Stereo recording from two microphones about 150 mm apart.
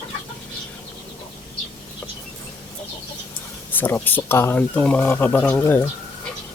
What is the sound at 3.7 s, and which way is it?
Speech, 15° left (ahead or behind).